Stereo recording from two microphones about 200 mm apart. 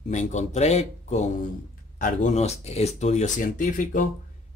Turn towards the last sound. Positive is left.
turn(degrees=40)  # may be behind; listen again after turning